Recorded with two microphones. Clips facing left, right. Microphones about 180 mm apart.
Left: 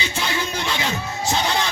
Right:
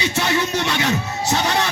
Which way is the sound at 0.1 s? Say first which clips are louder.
Right 5 dB; 70° right (ahead or behind).